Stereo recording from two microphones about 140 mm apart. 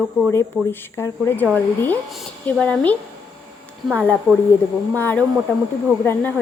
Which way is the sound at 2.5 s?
5° left (ahead or behind).